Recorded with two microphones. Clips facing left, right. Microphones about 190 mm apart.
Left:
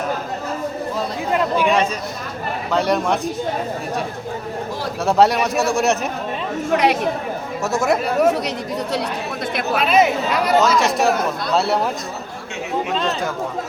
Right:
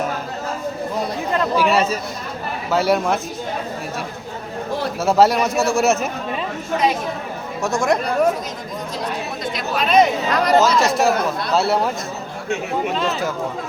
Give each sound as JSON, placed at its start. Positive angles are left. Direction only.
{"t": 1.5, "sound": "speech", "side_deg": -5}
{"t": 5.0, "sound": "speech", "side_deg": 0}
{"t": 6.7, "sound": "speech", "side_deg": 70}
{"t": 7.6, "sound": "speech", "side_deg": 5}
{"t": 9.8, "sound": "speech", "side_deg": 5}